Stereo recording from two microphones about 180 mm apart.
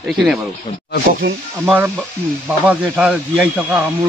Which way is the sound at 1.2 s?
90° right.